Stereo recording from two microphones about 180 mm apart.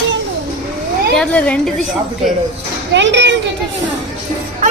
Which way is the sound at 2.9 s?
80° right.